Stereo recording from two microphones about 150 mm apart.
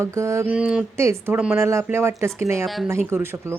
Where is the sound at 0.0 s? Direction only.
20° right (ahead or behind).